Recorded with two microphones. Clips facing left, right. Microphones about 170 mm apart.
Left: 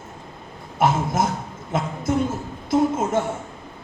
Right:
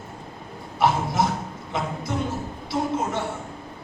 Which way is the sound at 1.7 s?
45° left (ahead or behind).